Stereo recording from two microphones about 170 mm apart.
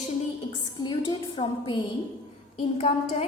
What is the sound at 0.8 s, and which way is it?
A woman's voice, 25° left (ahead or behind).